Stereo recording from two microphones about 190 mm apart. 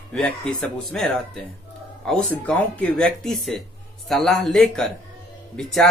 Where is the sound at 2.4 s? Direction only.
5° left (ahead or behind).